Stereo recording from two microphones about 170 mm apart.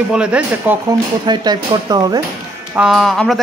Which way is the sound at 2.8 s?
Centre (ahead or behind).